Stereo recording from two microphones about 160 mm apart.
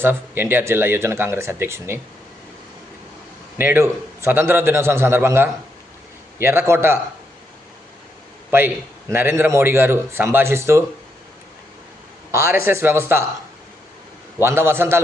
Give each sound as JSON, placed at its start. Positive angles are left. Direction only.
{"t": 0.0, "sound": "a man's voice", "side_deg": -15}
{"t": 3.6, "sound": "a man's voice", "side_deg": -15}
{"t": 8.4, "sound": "a man's voice", "side_deg": -15}
{"t": 12.3, "sound": "a man's voice", "side_deg": -15}
{"t": 14.4, "sound": "a man's voice", "side_deg": -15}